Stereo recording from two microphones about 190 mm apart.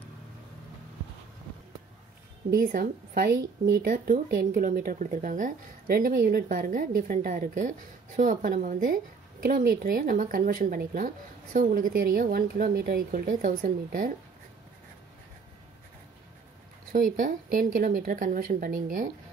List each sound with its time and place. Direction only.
2.5 s speech: 50° right (ahead or behind)
16.9 s speech: 45° right (ahead or behind)